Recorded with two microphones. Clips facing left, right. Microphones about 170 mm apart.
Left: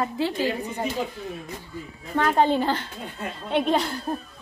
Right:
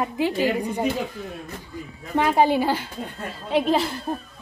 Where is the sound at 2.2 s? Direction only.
10° right (ahead or behind).